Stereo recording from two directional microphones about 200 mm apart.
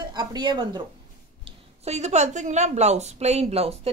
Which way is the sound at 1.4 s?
30° right (ahead or behind).